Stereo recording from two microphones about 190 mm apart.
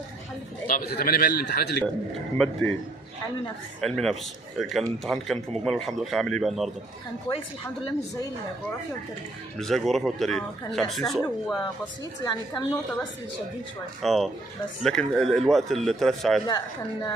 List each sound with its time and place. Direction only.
0.7 s a man's voice: 50° left (ahead or behind)
2.3 s a man's voice: 5° left (ahead or behind)
3.8 s a man's voice: 5° left (ahead or behind)
7.2 s speech: 25° left (ahead or behind)
9.6 s a man's voice: centre (ahead or behind)
12.2 s speech: 20° left (ahead or behind)
14.0 s a man's voice: centre (ahead or behind)
16.4 s speech: 20° left (ahead or behind)